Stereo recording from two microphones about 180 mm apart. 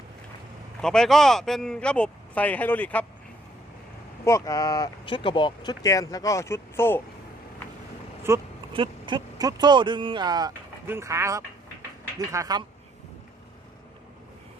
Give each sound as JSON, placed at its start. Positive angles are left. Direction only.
{"t": 0.8, "sound": "speech", "side_deg": 5}
{"t": 4.2, "sound": "speech", "side_deg": 15}
{"t": 8.3, "sound": "speech", "side_deg": -15}
{"t": 8.7, "sound": "speech", "side_deg": -30}